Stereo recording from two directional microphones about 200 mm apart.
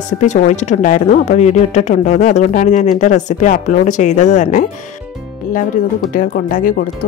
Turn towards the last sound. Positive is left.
turn(degrees=45)  # may be behind; listen again after turning